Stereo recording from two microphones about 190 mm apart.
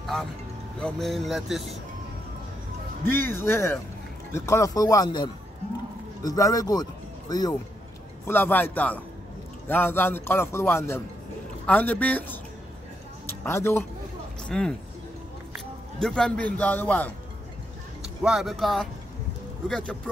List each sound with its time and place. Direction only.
0.0 s vehicle: centre (ahead or behind)
0.7 s speech: 5° left (ahead or behind)
3.1 s a man's voice: 10° left (ahead or behind)
16.0 s a man's voice: 5° left (ahead or behind)
18.2 s speech: centre (ahead or behind)